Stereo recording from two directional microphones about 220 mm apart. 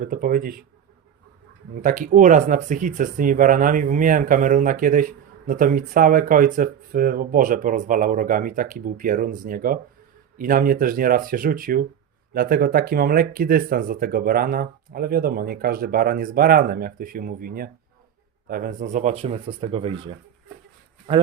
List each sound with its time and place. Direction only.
0.0 s speech: 40° right (ahead or behind)
1.8 s speech: 35° right (ahead or behind)
21.1 s speech: 25° right (ahead or behind)